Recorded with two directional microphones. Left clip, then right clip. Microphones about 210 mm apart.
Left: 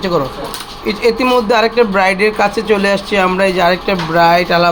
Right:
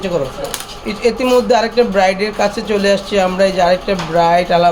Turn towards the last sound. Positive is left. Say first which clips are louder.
# left 1 dB
turn(degrees=0)  # may be behind; listen again after turning